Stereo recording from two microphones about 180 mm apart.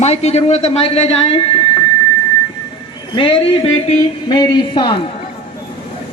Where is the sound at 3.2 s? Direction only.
30° left (ahead or behind).